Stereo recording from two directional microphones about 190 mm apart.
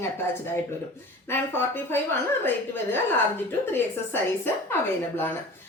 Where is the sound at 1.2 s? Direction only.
10° left (ahead or behind).